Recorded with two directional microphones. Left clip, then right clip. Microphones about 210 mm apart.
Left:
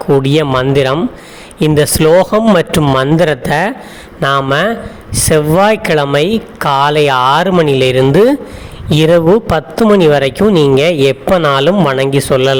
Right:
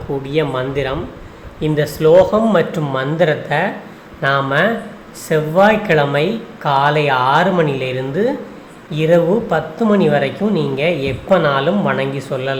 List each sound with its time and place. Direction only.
0.2 s a man's voice: 55° left (ahead or behind)